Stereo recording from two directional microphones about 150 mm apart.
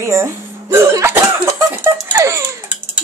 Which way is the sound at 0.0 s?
20° right (ahead or behind).